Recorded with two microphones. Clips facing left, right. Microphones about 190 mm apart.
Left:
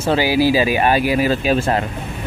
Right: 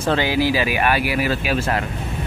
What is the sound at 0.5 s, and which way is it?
Speech, 20° left (ahead or behind).